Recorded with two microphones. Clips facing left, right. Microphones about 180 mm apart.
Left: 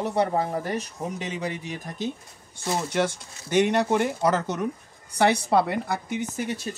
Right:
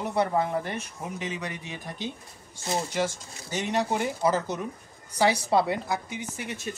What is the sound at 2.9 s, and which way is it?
Speech, 60° left (ahead or behind).